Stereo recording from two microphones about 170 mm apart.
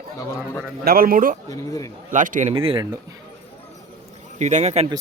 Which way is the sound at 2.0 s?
50° right (ahead or behind).